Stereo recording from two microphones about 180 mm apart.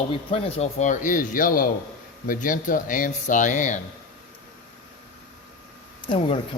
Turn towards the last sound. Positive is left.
turn(degrees=30)  # may be behind; listen again after turning